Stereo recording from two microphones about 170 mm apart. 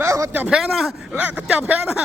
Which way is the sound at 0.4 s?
Centre (ahead or behind).